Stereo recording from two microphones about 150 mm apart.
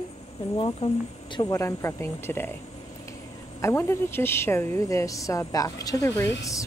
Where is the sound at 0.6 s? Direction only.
35° left (ahead or behind).